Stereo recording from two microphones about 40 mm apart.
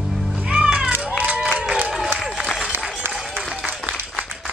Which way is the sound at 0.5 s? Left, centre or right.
Centre.